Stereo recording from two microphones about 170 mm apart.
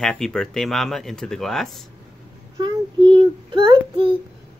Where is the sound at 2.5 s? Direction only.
30° right (ahead or behind).